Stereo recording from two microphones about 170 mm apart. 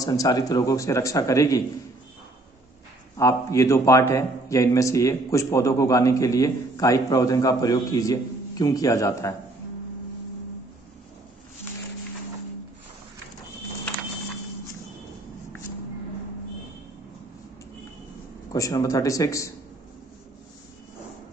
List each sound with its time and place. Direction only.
0.0 s a man's voice: 20° left (ahead or behind)
3.2 s a man's voice: 20° left (ahead or behind)
18.5 s a man's voice: 20° left (ahead or behind)